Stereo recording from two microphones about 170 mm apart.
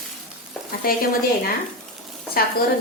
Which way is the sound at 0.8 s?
60° left (ahead or behind).